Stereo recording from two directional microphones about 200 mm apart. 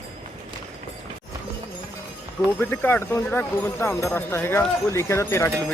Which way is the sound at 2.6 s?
10° left (ahead or behind).